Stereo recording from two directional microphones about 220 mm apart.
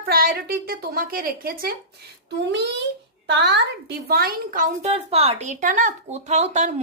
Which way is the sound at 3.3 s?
50° right (ahead or behind).